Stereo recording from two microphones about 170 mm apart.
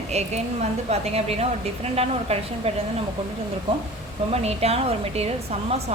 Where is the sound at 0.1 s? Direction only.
40° right (ahead or behind).